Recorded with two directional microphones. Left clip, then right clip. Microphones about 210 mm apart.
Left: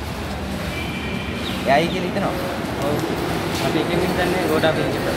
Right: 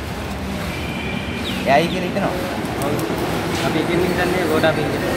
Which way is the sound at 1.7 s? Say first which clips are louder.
Right 2 dB; 15° right (ahead or behind).